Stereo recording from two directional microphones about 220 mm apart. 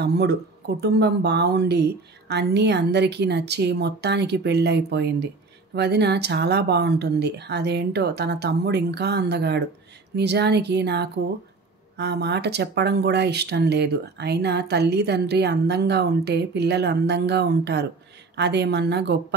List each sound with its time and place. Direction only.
0.0 s speech: 50° right (ahead or behind)